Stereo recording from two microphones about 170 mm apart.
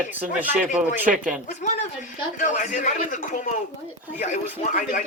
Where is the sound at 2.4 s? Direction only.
50° left (ahead or behind).